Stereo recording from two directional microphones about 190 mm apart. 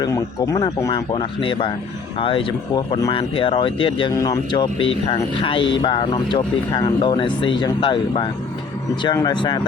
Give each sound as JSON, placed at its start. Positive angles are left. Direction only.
{"t": 0.0, "sound": "speech", "side_deg": 15}